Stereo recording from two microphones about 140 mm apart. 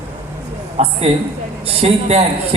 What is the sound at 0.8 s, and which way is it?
A man's voice, 50° right (ahead or behind).